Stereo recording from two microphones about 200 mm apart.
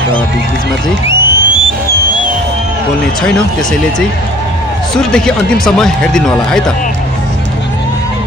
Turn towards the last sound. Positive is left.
turn(degrees=5)  # may be behind; listen again after turning